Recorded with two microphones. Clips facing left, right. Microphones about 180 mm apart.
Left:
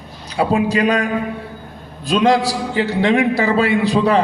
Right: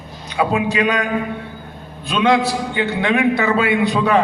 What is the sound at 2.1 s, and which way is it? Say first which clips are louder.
A man's voice: left 1 dB; 35° left (ahead or behind).